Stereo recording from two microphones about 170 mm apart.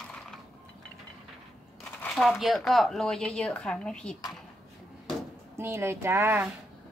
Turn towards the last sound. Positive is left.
turn(degrees=-15)  # may be behind; listen again after turning